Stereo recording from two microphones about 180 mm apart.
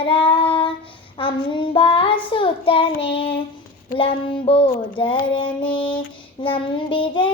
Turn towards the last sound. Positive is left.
turn(degrees=30)  # may be behind; listen again after turning